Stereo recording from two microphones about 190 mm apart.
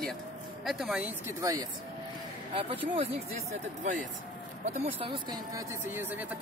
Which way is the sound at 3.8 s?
40° right (ahead or behind).